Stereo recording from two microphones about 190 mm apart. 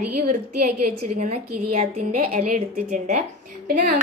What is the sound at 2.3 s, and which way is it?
A woman's voice, 40° right (ahead or behind).